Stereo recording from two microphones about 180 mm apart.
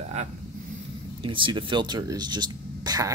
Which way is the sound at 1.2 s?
30° right (ahead or behind).